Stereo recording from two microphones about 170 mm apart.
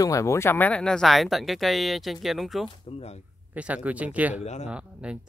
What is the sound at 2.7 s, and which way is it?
Speech, 35° left (ahead or behind).